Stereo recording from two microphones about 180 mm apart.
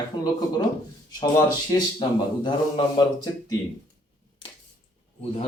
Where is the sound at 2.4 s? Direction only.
25° left (ahead or behind).